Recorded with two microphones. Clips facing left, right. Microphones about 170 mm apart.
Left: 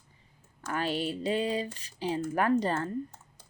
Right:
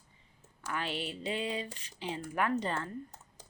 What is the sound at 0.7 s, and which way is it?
A woman's voice, 40° left (ahead or behind).